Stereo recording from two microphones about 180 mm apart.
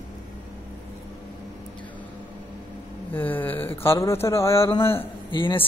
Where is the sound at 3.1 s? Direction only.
10° left (ahead or behind).